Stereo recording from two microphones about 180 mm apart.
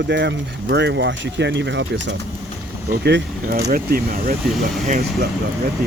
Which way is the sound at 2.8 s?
65° right (ahead or behind).